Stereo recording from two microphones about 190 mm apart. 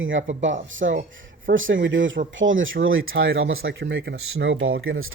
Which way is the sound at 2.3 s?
90° right.